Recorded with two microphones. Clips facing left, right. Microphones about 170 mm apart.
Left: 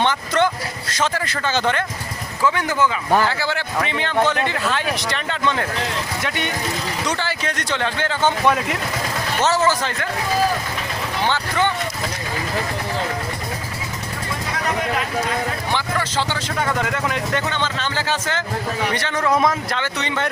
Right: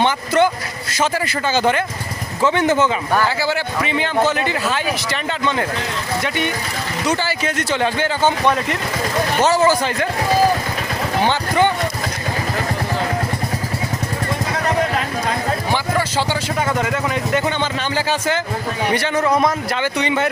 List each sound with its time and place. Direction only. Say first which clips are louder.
0.0 s speech: right 3 dB; 10° right (ahead or behind)
2.4 s speech: right 4 dB; 25° right (ahead or behind)
3.4 s a man's voice: right 3 dB; 5° right (ahead or behind)
9.4 s speech: right 3 dB; 10° right (ahead or behind)
11.3 s speech: right 3 dB; 15° right (ahead or behind)
15.7 s speech: right 3 dB; 10° right (ahead or behind)
19.3 s a man's voice: right 1 dB; centre (ahead or behind)
19.8 s speech: right 5 dB; 10° right (ahead or behind)